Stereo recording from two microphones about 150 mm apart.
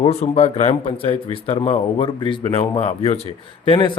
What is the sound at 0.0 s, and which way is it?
Speech, 45° left (ahead or behind).